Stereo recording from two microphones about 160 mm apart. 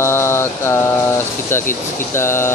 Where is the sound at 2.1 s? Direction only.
15° left (ahead or behind).